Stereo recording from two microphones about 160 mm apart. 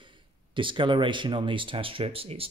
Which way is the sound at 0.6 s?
30° right (ahead or behind).